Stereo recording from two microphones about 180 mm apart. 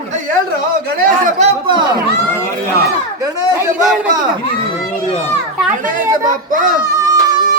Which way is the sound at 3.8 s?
Centre (ahead or behind).